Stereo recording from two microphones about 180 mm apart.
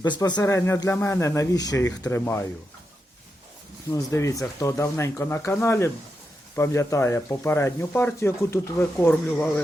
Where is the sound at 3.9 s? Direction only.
15° left (ahead or behind).